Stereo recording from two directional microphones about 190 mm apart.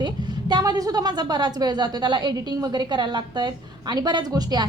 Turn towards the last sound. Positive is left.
turn(degrees=-20)  # may be behind; listen again after turning